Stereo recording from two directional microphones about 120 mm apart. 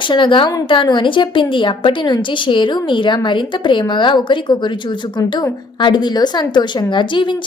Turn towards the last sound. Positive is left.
turn(degrees=40)  # may be behind; listen again after turning